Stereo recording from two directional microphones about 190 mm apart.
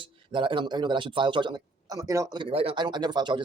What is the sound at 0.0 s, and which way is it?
Speech, 25° right (ahead or behind).